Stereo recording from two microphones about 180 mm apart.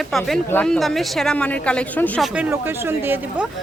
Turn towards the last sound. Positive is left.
turn(degrees=-10)  # may be behind; listen again after turning